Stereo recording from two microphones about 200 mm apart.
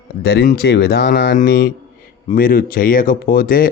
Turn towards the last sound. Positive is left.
turn(degrees=50)  # may be behind; listen again after turning